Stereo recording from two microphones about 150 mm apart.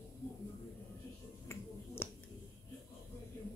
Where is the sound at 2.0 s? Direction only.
15° left (ahead or behind).